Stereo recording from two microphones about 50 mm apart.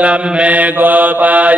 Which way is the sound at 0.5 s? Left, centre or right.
Right.